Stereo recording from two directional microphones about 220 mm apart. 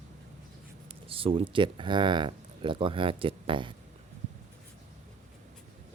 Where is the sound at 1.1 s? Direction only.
25° right (ahead or behind).